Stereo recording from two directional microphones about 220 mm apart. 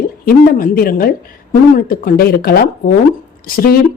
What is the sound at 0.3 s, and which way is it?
A woman's voice, 40° left (ahead or behind).